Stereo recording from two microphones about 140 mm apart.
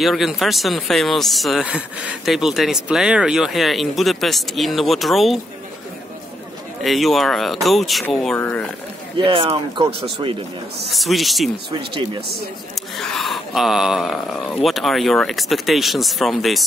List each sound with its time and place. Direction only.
0.0 s speech: centre (ahead or behind)
6.8 s speech: centre (ahead or behind)
9.2 s speech: 40° right (ahead or behind)
10.9 s speech: centre (ahead or behind)
11.9 s speech: 35° right (ahead or behind)
12.9 s speech: centre (ahead or behind)